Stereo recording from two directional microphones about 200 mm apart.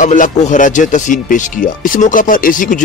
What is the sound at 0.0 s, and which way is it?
Speech, 40° left (ahead or behind).